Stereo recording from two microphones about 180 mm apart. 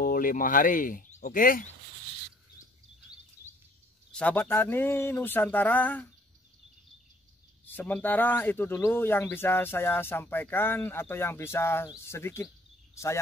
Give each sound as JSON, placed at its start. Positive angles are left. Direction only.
{"t": 0.0, "sound": "speech", "side_deg": 50}
{"t": 4.1, "sound": "speech", "side_deg": 5}
{"t": 7.6, "sound": "speech", "side_deg": 10}